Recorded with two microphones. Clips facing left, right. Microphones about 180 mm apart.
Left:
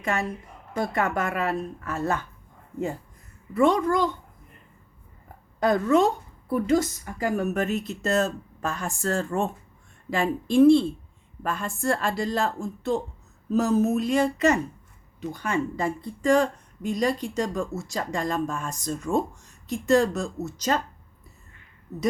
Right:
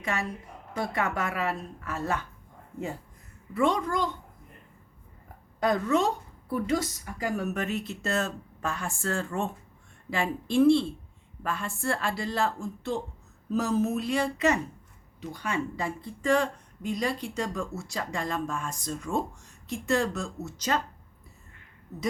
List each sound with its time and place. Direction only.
0.0 s a woman's voice: 50° left (ahead or behind)
3.5 s a woman's voice: 50° left (ahead or behind)
6.5 s a woman's voice: 50° left (ahead or behind)